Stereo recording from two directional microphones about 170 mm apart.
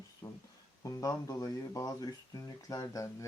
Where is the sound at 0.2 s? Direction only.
15° left (ahead or behind).